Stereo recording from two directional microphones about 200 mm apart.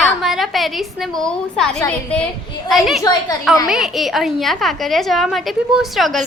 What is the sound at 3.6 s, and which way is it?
A woman's voice, centre (ahead or behind).